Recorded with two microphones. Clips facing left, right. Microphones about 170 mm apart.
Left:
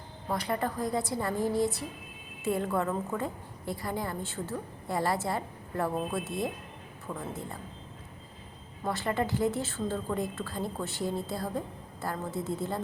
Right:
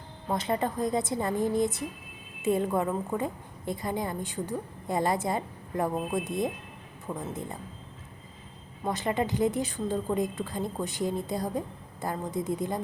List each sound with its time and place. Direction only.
0.3 s a woman's voice: 20° right (ahead or behind)
8.8 s a woman's voice: 20° right (ahead or behind)